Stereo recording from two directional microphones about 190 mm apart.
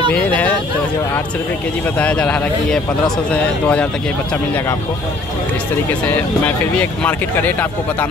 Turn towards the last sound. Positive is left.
turn(degrees=10)  # may be behind; listen again after turning